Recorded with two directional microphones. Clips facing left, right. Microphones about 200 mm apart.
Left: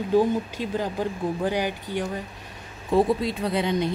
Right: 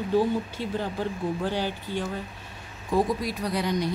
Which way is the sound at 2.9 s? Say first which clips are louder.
Left 4 dB; 25° left (ahead or behind).